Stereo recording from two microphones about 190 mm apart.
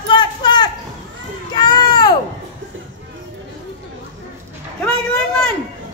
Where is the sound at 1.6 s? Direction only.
20° left (ahead or behind).